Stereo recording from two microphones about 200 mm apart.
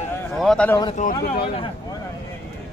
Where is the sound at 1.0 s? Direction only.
45° left (ahead or behind).